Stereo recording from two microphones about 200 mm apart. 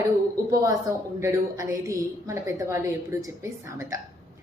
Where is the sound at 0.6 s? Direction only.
15° right (ahead or behind).